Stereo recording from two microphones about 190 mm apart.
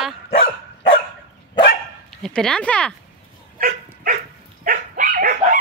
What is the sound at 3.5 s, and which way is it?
Dog, 45° right (ahead or behind).